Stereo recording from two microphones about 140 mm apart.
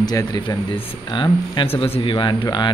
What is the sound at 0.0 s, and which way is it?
Speech, 25° left (ahead or behind).